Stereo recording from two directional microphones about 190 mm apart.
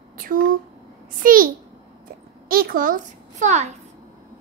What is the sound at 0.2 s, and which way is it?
A child's voice, 50° right (ahead or behind).